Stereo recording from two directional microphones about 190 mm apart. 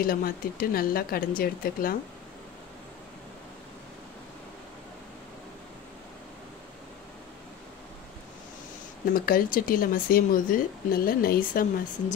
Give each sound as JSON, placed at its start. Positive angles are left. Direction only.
{"t": 0.0, "sound": "speech", "side_deg": 50}
{"t": 9.1, "sound": "speech", "side_deg": 50}